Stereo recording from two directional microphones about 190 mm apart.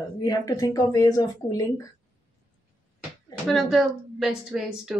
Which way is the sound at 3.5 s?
Centre (ahead or behind).